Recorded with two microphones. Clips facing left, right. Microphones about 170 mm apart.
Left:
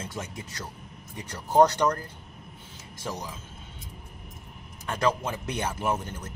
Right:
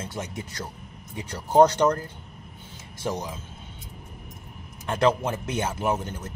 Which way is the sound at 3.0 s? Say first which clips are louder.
Right 6 dB; 25° right (ahead or behind).